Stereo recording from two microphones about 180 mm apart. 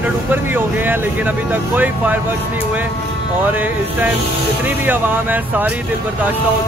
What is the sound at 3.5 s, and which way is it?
Speech, 10° right (ahead or behind).